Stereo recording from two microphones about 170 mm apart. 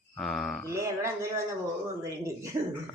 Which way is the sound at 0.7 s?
15° right (ahead or behind).